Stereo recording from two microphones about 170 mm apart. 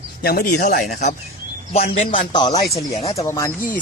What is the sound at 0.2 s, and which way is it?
Speech, 60° left (ahead or behind).